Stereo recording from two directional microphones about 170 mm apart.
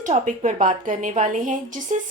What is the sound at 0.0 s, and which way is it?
A woman's voice, 45° right (ahead or behind).